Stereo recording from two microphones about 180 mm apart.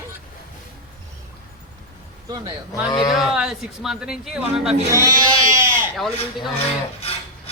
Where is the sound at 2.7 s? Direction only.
20° left (ahead or behind).